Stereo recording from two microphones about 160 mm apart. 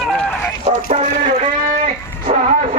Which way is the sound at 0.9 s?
35° right (ahead or behind).